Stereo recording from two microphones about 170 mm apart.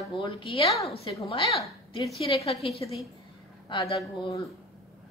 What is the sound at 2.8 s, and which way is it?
Speech, 20° left (ahead or behind).